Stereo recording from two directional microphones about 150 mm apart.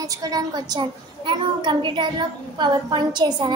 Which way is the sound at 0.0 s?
25° right (ahead or behind).